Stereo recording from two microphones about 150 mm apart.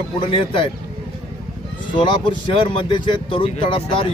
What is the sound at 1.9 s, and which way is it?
Speech, 35° left (ahead or behind).